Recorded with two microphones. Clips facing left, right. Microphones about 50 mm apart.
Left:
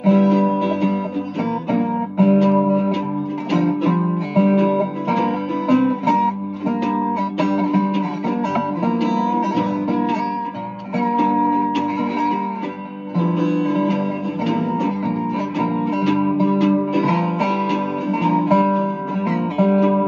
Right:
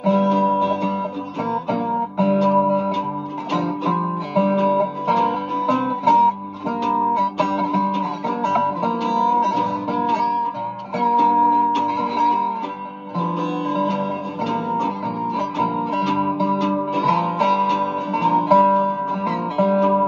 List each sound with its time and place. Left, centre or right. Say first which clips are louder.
0.0 s guitar: left 2 dB; left
2.7 s music: left 1 dB; left
8.5 s guitar: even; left
11.0 s music: right 2 dB; left
15.6 s guitar: left 2 dB; left
16.3 s music: left 3 dB; left
16.9 s guitar: even; left